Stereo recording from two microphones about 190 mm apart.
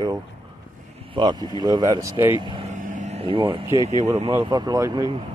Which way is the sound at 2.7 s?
40° right (ahead or behind).